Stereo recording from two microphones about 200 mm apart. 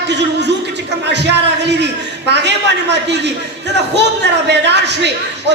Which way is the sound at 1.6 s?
60° right (ahead or behind).